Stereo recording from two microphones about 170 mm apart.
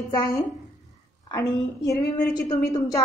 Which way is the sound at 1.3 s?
20° left (ahead or behind).